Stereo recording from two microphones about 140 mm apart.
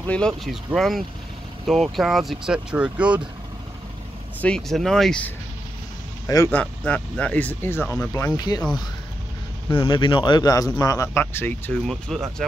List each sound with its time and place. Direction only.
0.0 s speech: 10° left (ahead or behind)
0.3 s speech: centre (ahead or behind)
4.4 s speech: 5° left (ahead or behind)
6.2 s a man's voice: 25° left (ahead or behind)
6.5 s speech: 10° left (ahead or behind); by 8.6 s 25° left (ahead or behind)
9.7 s speech: 35° left (ahead or behind); by 11.7 s 15° left (ahead or behind)
11.8 s speech: centre (ahead or behind)